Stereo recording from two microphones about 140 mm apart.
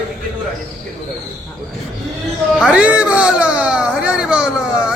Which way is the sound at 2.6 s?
5° right (ahead or behind).